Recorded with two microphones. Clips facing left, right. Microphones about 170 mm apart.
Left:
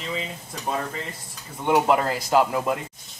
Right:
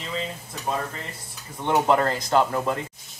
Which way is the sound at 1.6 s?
5° left (ahead or behind).